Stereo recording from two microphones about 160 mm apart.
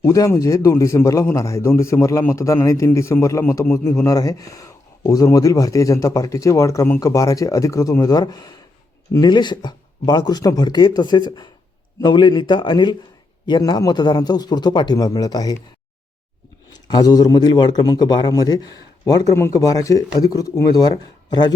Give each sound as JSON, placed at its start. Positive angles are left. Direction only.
{"t": 0.0, "sound": "a man's voice", "side_deg": 20}
{"t": 16.7, "sound": "a man's voice", "side_deg": 25}